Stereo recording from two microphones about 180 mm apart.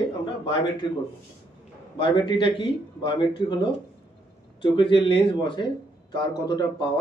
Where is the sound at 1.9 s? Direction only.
25° left (ahead or behind).